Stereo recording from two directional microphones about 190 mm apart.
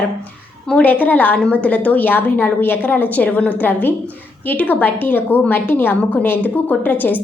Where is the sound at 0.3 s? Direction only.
5° left (ahead or behind).